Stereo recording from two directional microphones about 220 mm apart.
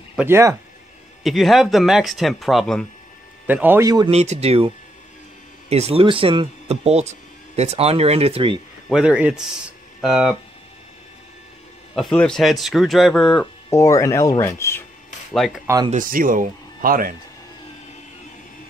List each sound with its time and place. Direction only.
0.1 s speech: 10° right (ahead or behind)
1.2 s speech: centre (ahead or behind)
3.4 s a man's voice: 10° right (ahead or behind)
4.1 s speech: 30° right (ahead or behind)
8.8 s speech: 5° right (ahead or behind)
11.9 s speech: centre (ahead or behind)
15.3 s speech: centre (ahead or behind)
15.6 s a man's voice: 15° right (ahead or behind)
15.9 s speech: 40° right (ahead or behind)